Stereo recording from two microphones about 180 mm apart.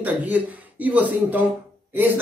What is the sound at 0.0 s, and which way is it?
A man's voice, 10° right (ahead or behind).